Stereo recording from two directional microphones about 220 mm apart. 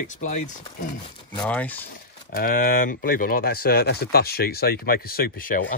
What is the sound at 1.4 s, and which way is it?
Speech, 5° left (ahead or behind).